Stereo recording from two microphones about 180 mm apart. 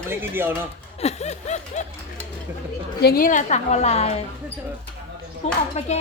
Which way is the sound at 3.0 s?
55° left (ahead or behind).